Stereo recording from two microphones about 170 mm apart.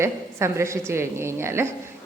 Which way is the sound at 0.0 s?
15° right (ahead or behind).